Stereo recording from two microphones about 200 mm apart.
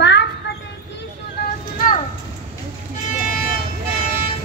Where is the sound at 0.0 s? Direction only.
60° left (ahead or behind).